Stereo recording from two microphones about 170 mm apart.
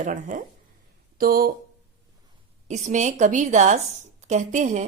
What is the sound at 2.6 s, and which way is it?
A woman's voice, 45° right (ahead or behind).